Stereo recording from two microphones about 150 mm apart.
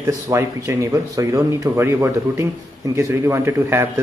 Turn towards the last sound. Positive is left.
turn(degrees=-15)  # may be behind; listen again after turning